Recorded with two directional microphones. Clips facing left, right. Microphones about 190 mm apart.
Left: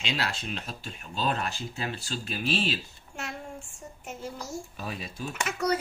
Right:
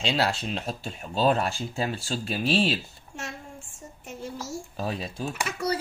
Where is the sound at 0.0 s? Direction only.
30° right (ahead or behind).